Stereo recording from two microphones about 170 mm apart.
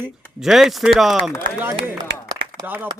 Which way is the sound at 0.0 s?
5° right (ahead or behind).